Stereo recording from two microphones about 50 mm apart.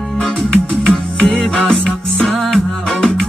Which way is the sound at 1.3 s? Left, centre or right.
Centre.